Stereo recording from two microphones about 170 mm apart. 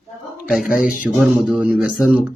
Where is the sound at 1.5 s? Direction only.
5° right (ahead or behind).